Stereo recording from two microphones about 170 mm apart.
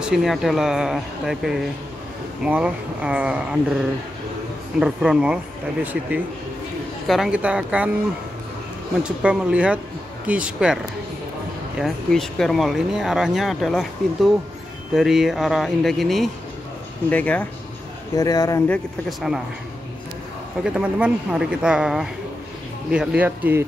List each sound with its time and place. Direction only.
0.0 s speech: centre (ahead or behind)
4.7 s speech: 5° right (ahead or behind)
9.0 s speech: 5° right (ahead or behind)
11.8 s speech: 5° left (ahead or behind)
18.1 s speech: 20° left (ahead or behind)
18.7 s speech: centre (ahead or behind)
20.6 s speech: 5° right (ahead or behind)